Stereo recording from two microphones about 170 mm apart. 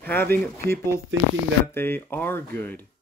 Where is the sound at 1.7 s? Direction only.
15° left (ahead or behind).